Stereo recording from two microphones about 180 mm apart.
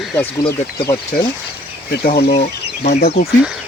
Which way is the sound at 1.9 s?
60° left (ahead or behind).